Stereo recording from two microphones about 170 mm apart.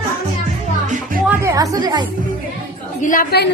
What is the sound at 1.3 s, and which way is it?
Music, 20° right (ahead or behind).